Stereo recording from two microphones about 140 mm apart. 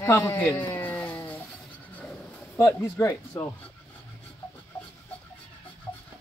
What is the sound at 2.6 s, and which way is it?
Speech, 20° left (ahead or behind).